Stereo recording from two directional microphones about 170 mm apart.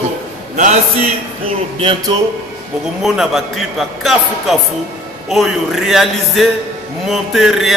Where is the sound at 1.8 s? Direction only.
30° right (ahead or behind).